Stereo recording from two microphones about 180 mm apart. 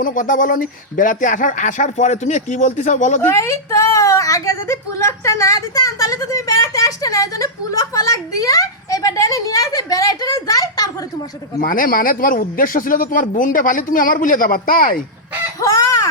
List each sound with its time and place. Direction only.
0.0 s speech: 50° left (ahead or behind)
3.3 s a woman's voice: 15° left (ahead or behind)
11.6 s speech: 50° left (ahead or behind)
15.6 s chicken: 15° left (ahead or behind)